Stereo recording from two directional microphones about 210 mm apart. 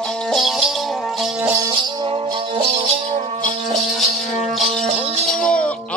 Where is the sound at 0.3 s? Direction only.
Centre (ahead or behind).